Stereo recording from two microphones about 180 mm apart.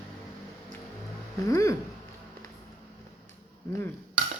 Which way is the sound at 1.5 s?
15° left (ahead or behind).